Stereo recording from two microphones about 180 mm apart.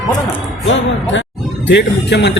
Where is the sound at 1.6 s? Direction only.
75° left (ahead or behind).